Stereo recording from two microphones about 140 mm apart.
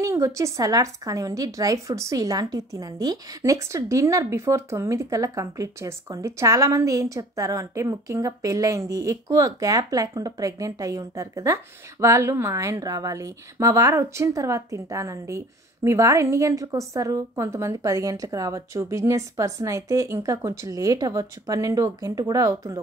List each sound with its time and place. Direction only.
0.0 s a woman's voice: 20° right (ahead or behind)